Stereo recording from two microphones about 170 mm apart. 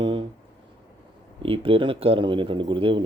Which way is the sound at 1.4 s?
30° right (ahead or behind).